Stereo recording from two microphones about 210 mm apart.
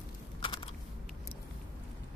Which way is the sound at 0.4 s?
25° left (ahead or behind).